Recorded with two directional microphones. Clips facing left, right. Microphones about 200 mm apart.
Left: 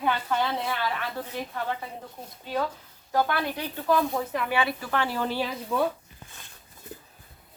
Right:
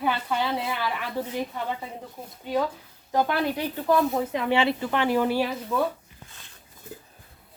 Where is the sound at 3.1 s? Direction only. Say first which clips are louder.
Right 2 dB; 20° right (ahead or behind).